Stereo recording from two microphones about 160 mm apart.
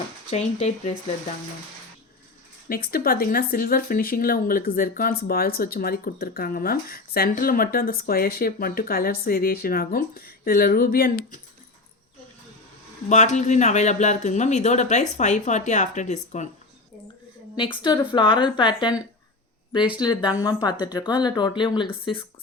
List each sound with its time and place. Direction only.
0.3 s speech: 40° left (ahead or behind)
2.6 s speech: 65° left (ahead or behind)
13.1 s speech: 50° left (ahead or behind)
17.6 s speech: 30° left (ahead or behind)